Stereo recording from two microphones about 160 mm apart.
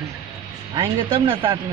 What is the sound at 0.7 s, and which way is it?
Speech, 30° right (ahead or behind).